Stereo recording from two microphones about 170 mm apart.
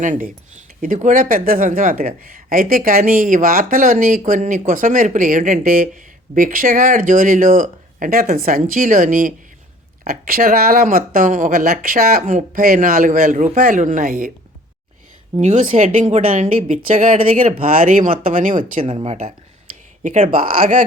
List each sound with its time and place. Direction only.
0.0 s speech: 50° right (ahead or behind)
15.4 s speech: 45° right (ahead or behind)
18.3 s speech: 50° right (ahead or behind)
20.4 s speech: 55° right (ahead or behind)